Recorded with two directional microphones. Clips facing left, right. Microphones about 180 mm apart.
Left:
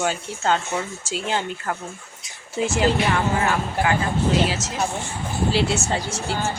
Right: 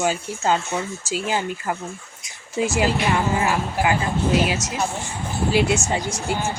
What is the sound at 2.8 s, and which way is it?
Speech, 10° right (ahead or behind).